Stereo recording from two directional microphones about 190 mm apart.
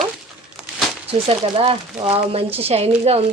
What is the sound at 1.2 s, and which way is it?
Speech, 30° right (ahead or behind).